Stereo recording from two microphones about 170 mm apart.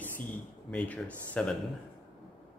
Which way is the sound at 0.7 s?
5° left (ahead or behind).